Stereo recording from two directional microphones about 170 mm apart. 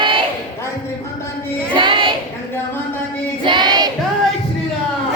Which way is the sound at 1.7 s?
30° right (ahead or behind).